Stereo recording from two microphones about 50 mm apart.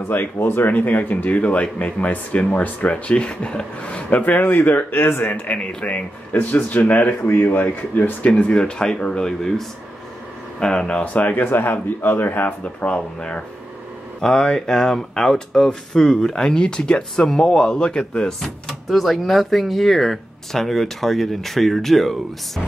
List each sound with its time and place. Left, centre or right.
0.1 s speech: left
4.4 s speech: left
5.6 s speech: centre
6.3 s speech: left
7.2 s speech: left
8.3 s speech: left
11.1 s speech: left
11.4 s speech: left
12.6 s speech: left; by 22.2 s centre